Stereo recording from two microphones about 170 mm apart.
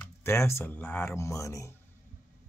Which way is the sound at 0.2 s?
15° left (ahead or behind).